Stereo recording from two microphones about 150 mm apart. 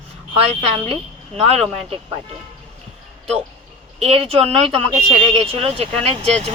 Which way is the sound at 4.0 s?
40° right (ahead or behind).